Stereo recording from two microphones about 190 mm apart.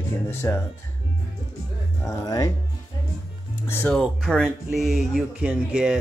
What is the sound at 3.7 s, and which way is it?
Speech, 10° left (ahead or behind).